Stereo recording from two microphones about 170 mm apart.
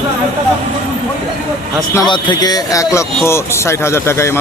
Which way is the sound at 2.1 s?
25° left (ahead or behind).